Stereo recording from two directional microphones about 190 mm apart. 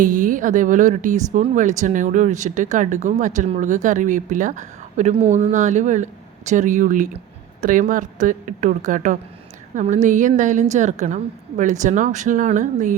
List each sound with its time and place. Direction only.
0.0 s speech: 45° right (ahead or behind)